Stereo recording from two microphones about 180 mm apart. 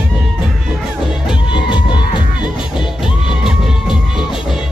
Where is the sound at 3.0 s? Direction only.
Centre (ahead or behind).